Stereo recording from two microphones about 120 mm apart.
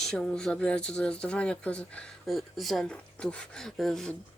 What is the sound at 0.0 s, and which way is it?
Speech, 5° left (ahead or behind).